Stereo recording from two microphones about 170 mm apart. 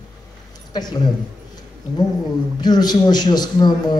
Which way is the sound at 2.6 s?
25° left (ahead or behind).